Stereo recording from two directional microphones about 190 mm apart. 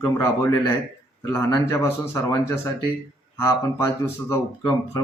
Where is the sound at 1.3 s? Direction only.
15° left (ahead or behind).